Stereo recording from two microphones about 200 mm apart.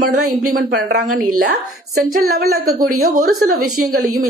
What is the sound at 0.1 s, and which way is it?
Speech, 45° right (ahead or behind).